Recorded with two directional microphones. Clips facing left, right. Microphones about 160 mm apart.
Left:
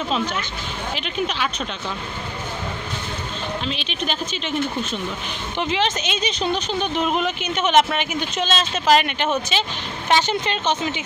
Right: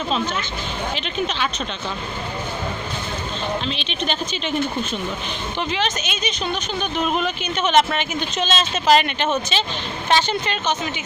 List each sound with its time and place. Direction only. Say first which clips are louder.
0.9 s speech: left 2 dB; 10° left (ahead or behind)
3.6 s speech: right 1 dB; 5° left (ahead or behind)
5.6 s speech: left 2 dB; 25° left (ahead or behind)